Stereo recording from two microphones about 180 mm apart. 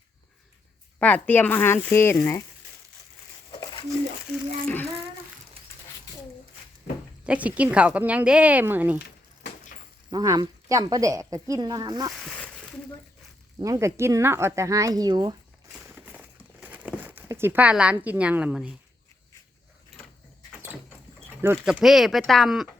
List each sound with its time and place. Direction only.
0.9 s speech: 10° left (ahead or behind)
3.5 s crumpling: 25° left (ahead or behind)
7.3 s speech: 10° right (ahead or behind)
10.1 s speech: 20° right (ahead or behind)
12.1 s a sound: 5° left (ahead or behind)
13.6 s speech: 15° right (ahead or behind)
16.1 s crumpling: 10° right (ahead or behind)
21.4 s speech: 10° right (ahead or behind)